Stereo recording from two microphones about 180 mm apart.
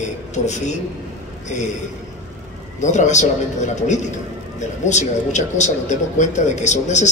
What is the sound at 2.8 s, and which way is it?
A man's voice, 40° left (ahead or behind).